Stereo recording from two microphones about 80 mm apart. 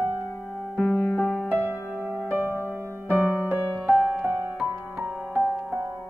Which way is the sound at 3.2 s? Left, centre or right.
Centre.